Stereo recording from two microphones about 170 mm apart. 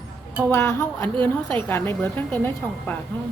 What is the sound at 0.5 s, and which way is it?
A woman's voice, 15° left (ahead or behind).